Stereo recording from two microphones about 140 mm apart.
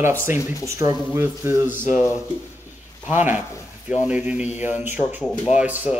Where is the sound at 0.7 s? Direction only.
20° right (ahead or behind).